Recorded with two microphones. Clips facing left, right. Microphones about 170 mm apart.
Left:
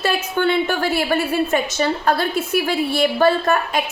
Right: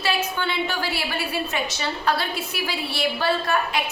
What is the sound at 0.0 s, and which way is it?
A woman's voice, 50° left (ahead or behind).